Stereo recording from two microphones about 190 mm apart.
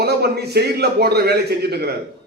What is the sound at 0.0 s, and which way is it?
A man's voice, 60° right (ahead or behind).